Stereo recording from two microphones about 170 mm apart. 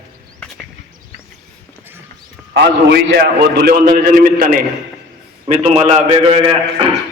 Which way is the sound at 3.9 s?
60° right (ahead or behind).